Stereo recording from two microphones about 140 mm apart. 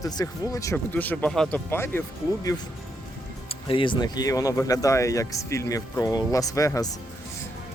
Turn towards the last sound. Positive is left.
turn(degrees=25)  # may be behind; listen again after turning